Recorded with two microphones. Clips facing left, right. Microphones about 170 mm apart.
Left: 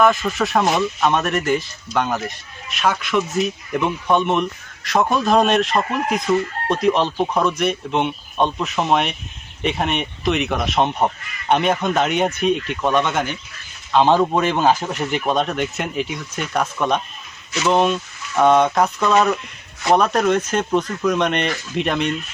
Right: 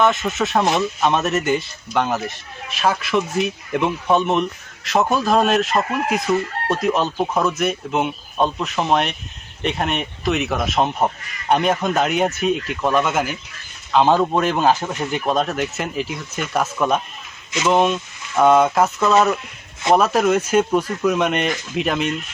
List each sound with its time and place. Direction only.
0.3 s a man's voice: centre (ahead or behind)
3.1 s speech: 30° right (ahead or behind)
3.4 s a man's voice: centre (ahead or behind)